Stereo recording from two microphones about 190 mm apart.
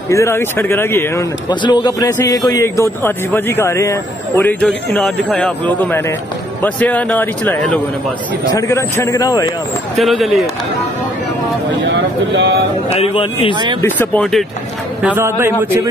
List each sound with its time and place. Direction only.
0.1 s a man's voice: 15° left (ahead or behind)
9.9 s speech: centre (ahead or behind)
11.8 s speech: 65° right (ahead or behind)
13.0 s speech: 30° left (ahead or behind)
13.8 s a man's voice: 10° left (ahead or behind)
15.0 s a man's voice: 10° right (ahead or behind)